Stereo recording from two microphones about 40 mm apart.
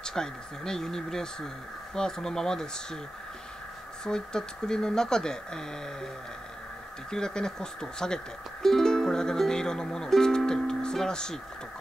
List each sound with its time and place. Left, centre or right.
0.0 s speech: centre
4.0 s speech: centre
7.1 s speech: centre
8.6 s music: centre